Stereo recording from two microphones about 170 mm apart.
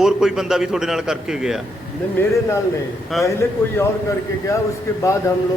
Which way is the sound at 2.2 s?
15° left (ahead or behind).